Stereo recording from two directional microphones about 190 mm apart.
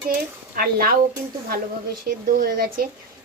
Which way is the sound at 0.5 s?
50° right (ahead or behind).